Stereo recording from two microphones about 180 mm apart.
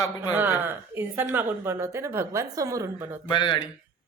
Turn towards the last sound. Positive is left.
turn(degrees=25)  # may be behind; listen again after turning